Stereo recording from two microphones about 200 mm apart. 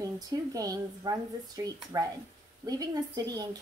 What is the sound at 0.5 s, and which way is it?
Speech, 20° right (ahead or behind).